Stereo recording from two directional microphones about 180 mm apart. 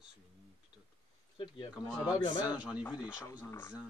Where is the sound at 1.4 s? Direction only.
30° left (ahead or behind).